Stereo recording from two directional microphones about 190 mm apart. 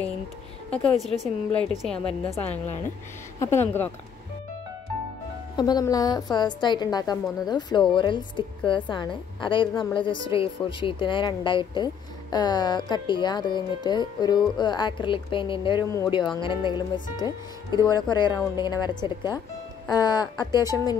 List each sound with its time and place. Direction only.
0.7 s a woman's voice: centre (ahead or behind)
3.3 s speech: 15° left (ahead or behind)
5.6 s a woman's voice: 20° left (ahead or behind)